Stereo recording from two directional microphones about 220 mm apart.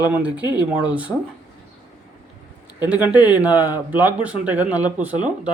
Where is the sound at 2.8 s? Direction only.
5° right (ahead or behind).